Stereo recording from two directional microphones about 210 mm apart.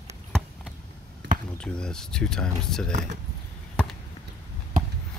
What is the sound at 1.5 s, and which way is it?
Speech, 5° left (ahead or behind).